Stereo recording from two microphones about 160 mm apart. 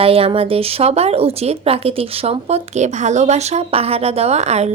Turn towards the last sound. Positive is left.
turn(degrees=-45)  # may be behind; listen again after turning